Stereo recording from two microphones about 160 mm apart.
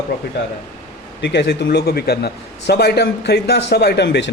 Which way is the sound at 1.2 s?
90° left.